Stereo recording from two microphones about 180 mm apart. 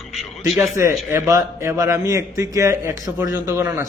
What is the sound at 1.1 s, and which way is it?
A man's voice, 15° right (ahead or behind).